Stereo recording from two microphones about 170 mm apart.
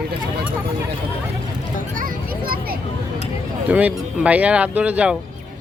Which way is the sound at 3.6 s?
10° right (ahead or behind).